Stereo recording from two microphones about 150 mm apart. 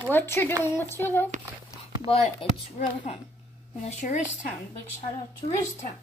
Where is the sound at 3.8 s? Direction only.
50° left (ahead or behind).